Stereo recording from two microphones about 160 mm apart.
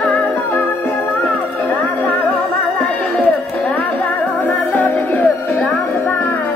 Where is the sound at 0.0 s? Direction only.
10° left (ahead or behind).